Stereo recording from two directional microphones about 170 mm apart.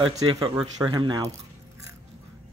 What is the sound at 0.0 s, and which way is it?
Speech, 30° right (ahead or behind).